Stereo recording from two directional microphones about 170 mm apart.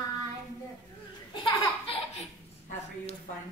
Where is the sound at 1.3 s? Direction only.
30° left (ahead or behind).